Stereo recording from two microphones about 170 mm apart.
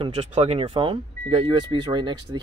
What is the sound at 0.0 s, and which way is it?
Speech, 35° right (ahead or behind).